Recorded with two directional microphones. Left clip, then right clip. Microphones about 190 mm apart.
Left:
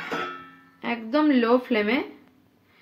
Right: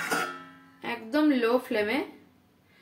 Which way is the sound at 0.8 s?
45° left (ahead or behind).